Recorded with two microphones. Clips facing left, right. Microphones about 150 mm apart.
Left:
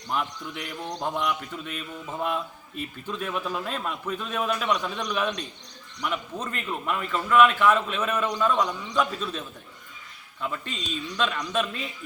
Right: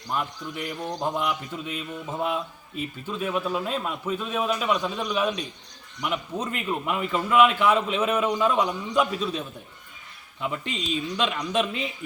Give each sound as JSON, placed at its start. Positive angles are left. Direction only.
{"t": 0.1, "sound": "a man's voice", "side_deg": 0}
{"t": 11.2, "sound": "a man's voice", "side_deg": -15}